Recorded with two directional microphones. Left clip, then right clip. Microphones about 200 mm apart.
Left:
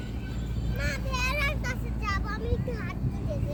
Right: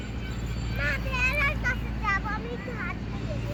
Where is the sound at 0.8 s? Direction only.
60° left (ahead or behind).